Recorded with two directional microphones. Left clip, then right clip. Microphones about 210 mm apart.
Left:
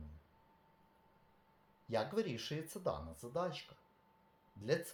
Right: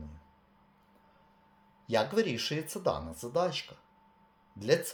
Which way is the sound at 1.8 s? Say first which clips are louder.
Right 9 dB; 10° right (ahead or behind).